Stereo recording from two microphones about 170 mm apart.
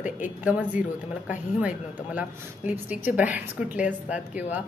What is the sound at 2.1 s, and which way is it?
A woman's voice, 10° right (ahead or behind).